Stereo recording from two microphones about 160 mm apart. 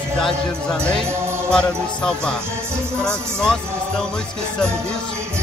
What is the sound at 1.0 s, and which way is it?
Music, 15° right (ahead or behind).